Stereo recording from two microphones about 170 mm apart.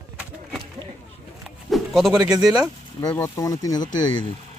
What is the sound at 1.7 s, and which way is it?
Speech, centre (ahead or behind).